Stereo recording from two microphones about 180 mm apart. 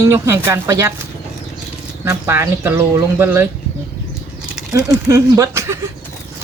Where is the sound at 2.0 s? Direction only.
15° right (ahead or behind).